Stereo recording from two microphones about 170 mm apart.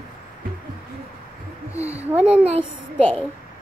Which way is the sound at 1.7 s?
15° left (ahead or behind).